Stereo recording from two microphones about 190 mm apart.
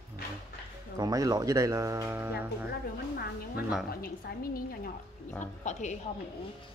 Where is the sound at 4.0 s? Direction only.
50° left (ahead or behind).